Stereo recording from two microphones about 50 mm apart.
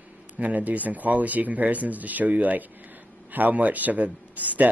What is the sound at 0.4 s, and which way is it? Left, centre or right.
Speech, right.